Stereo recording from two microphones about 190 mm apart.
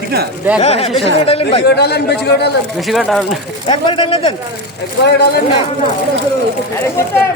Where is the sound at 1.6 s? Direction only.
60° left (ahead or behind).